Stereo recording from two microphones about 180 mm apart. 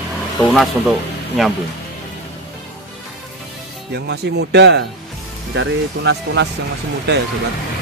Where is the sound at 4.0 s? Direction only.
65° right (ahead or behind).